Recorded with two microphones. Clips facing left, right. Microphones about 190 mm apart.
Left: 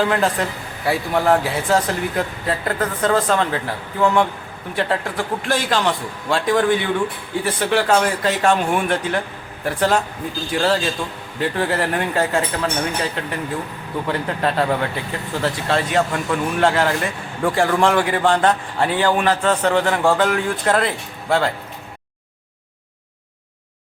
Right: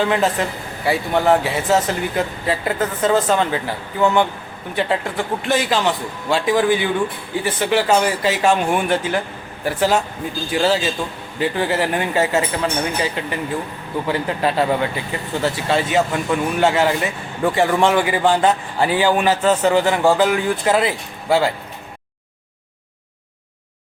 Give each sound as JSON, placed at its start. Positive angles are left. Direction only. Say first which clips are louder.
{"t": 0.0, "sound": "speech", "louder": "right 1 dB", "side_deg": 0}